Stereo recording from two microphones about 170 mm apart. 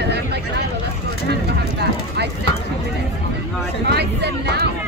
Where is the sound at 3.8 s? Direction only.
75° right (ahead or behind).